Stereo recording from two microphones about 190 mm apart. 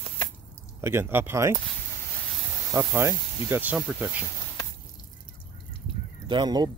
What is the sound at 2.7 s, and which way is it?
Speech, 15° right (ahead or behind).